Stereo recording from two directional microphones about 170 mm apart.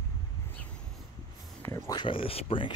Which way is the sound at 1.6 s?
20° left (ahead or behind).